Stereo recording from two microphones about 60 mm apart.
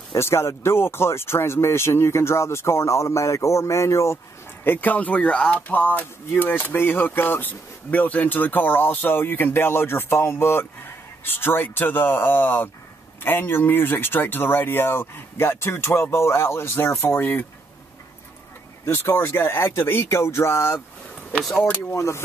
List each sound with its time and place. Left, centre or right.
0.2 s speech: left
4.6 s speech: left
17.1 s speech: left
19.0 s speech: left
21.9 s speech: left